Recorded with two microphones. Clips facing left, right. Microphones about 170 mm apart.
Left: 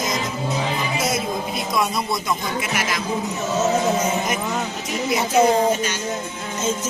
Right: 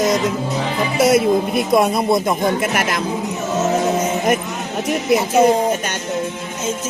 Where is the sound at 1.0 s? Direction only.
65° right (ahead or behind).